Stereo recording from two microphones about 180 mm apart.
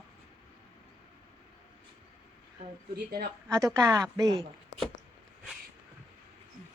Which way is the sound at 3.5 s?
15° right (ahead or behind).